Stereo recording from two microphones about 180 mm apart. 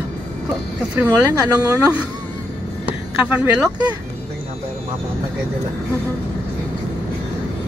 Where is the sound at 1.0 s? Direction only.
20° right (ahead or behind).